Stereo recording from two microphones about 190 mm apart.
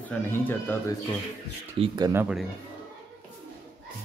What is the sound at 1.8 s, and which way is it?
Speech, 20° right (ahead or behind).